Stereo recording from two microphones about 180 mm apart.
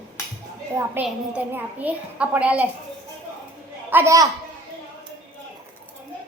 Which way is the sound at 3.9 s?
15° right (ahead or behind).